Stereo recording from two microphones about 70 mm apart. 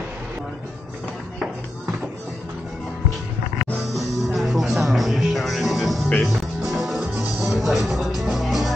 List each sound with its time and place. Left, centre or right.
3.7 s music: centre